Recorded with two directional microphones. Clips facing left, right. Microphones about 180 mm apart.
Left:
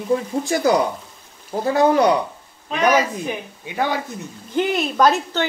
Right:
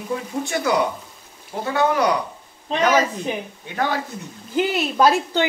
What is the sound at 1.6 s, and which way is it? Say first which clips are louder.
Speech: left 4 dB; 35° left (ahead or behind).